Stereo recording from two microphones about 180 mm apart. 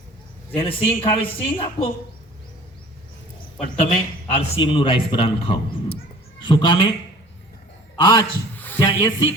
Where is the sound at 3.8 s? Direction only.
40° left (ahead or behind).